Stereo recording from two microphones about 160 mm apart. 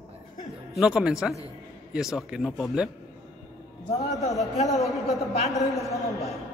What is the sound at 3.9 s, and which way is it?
Speech, 40° left (ahead or behind).